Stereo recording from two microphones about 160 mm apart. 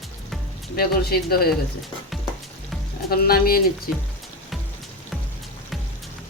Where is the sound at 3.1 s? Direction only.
70° left (ahead or behind).